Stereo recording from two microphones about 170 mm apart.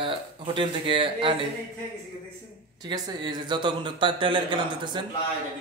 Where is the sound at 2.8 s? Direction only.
25° right (ahead or behind).